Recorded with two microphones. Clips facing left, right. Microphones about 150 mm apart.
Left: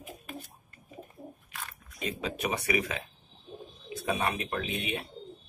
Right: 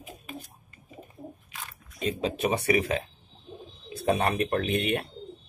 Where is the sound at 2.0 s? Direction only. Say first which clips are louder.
Right 6 dB; 30° right (ahead or behind).